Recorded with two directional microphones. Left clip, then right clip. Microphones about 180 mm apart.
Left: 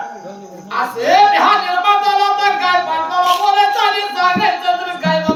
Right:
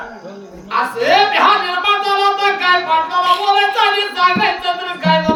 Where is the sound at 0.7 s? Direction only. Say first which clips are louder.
Even; 5° right (ahead or behind).